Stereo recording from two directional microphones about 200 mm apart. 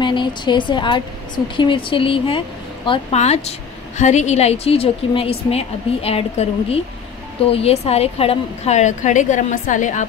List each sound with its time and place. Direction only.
0.0 s a woman's voice: 25° left (ahead or behind); by 10.0 s 40° left (ahead or behind)